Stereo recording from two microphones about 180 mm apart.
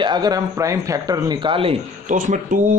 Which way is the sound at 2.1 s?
45° right (ahead or behind).